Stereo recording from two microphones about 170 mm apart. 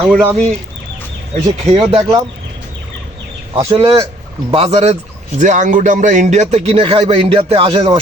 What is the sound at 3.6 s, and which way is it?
A man's voice, 30° right (ahead or behind).